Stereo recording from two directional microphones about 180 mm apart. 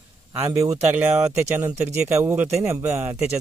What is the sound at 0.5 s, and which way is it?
Speech, 10° right (ahead or behind).